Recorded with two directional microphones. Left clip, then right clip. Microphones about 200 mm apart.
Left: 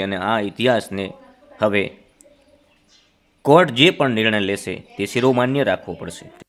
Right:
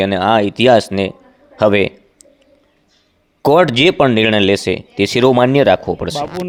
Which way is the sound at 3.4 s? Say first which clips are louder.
Right 3 dB; 30° right (ahead or behind).